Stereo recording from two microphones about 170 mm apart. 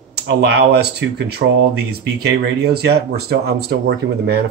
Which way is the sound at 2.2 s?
75° right (ahead or behind).